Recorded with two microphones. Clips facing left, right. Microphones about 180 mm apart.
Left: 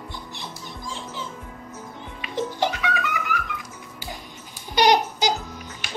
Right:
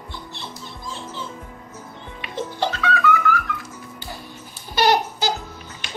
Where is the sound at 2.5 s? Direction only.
15° left (ahead or behind).